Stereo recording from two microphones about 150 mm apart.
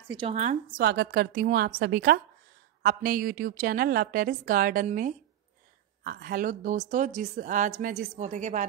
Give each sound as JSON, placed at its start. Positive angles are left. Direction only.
{"t": 0.3, "sound": "a woman's voice", "side_deg": -50}
{"t": 0.7, "sound": "a woman's voice", "side_deg": -90}
{"t": 6.0, "sound": "a woman's voice", "side_deg": -75}